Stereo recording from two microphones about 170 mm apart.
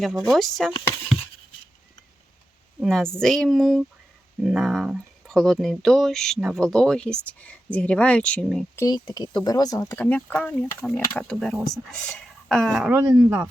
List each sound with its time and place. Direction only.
0.0 s speech: centre (ahead or behind)
2.8 s speech: 5° left (ahead or behind)
8.7 s speech: 20° left (ahead or behind); by 13.1 s 10° right (ahead or behind)